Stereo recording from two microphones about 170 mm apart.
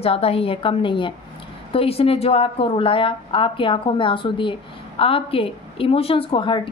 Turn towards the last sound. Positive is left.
turn(degrees=30)  # may be behind; listen again after turning